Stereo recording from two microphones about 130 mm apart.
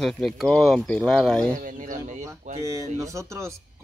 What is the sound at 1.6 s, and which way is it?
Speech, 90° right.